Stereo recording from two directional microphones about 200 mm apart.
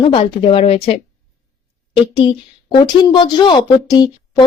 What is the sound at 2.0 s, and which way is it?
A woman's voice, 25° left (ahead or behind).